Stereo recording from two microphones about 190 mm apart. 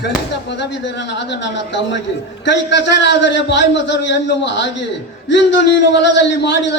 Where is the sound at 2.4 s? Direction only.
70° left (ahead or behind).